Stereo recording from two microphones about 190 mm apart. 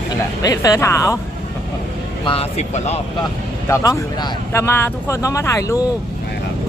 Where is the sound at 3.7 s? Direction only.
15° left (ahead or behind).